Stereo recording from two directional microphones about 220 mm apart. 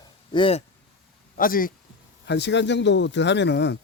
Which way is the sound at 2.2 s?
50° left (ahead or behind).